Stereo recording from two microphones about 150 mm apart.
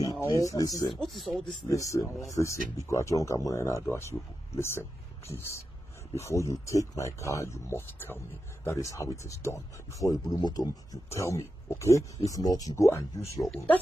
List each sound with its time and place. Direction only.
0.1 s speech: 20° left (ahead or behind)
1.0 s speech: centre (ahead or behind)
1.4 s speech: 20° left (ahead or behind)